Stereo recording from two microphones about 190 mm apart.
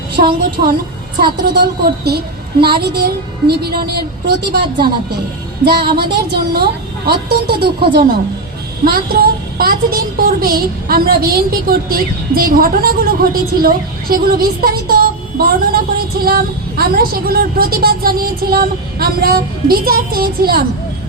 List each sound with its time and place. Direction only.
0.2 s music: 50° right (ahead or behind)
1.2 s a woman's voice: 60° right (ahead or behind)
8.8 s music: 50° right (ahead or behind)
13.6 s speech: 50° right (ahead or behind)
16.2 s music: 50° right (ahead or behind)